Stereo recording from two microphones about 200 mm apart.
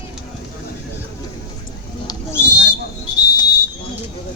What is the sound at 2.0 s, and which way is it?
Owl, 15° left (ahead or behind).